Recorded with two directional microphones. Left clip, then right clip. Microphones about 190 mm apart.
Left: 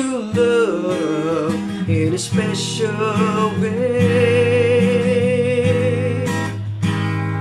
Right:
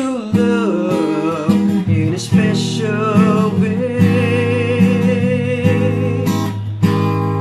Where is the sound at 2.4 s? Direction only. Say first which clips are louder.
Right 2 dB; centre (ahead or behind).